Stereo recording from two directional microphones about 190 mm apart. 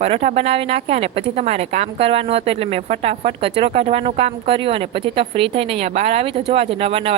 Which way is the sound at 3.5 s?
30° right (ahead or behind).